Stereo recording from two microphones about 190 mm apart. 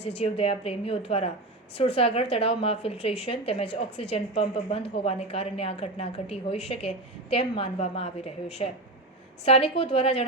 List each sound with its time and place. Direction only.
0.2 s a woman's voice: 30° left (ahead or behind)